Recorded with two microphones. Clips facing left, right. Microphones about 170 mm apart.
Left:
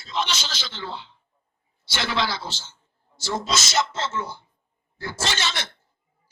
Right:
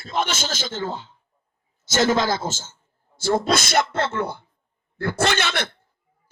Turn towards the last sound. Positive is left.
turn(degrees=-55)  # may be behind; listen again after turning